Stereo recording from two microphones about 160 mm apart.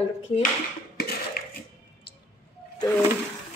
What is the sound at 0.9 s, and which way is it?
Dishes, 75° left (ahead or behind).